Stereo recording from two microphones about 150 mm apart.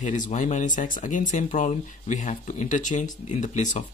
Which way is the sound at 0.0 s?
55° left (ahead or behind).